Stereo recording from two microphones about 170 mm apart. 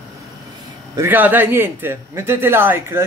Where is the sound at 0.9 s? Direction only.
10° right (ahead or behind).